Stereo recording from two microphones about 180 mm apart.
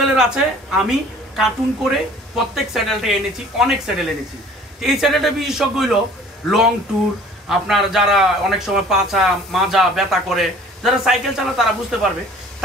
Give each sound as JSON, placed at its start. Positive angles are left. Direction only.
{"t": 0.0, "sound": "a man's voice", "side_deg": -5}